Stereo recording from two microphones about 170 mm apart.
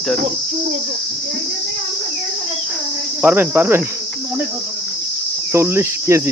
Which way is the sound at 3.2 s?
10° right (ahead or behind).